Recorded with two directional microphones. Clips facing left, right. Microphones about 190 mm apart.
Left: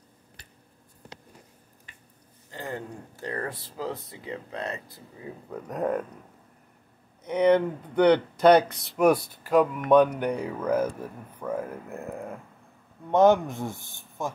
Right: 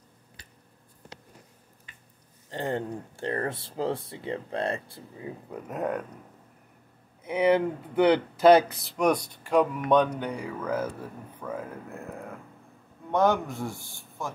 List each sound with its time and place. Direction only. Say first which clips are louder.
2.5 s speech: right 5 dB; 30° right (ahead or behind)
5.5 s speech: left 3 dB; 5° right (ahead or behind)
7.2 s speech: left 2 dB; 5° right (ahead or behind); by 11.5 s 15° left (ahead or behind)
13.1 s a man's voice: left 5 dB; 20° left (ahead or behind)